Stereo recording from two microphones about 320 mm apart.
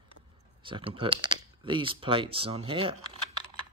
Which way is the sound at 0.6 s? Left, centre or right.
Centre.